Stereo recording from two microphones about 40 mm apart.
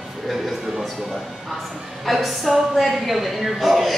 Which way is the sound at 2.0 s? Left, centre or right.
Centre.